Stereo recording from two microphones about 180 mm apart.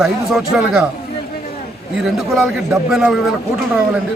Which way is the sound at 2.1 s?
Centre (ahead or behind).